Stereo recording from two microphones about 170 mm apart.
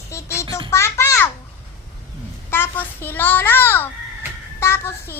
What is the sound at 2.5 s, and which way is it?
A child's voice, 15° left (ahead or behind).